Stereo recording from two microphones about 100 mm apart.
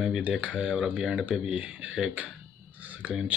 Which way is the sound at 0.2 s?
15° right (ahead or behind).